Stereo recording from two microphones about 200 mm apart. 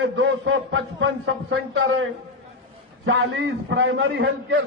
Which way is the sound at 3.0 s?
65° right (ahead or behind).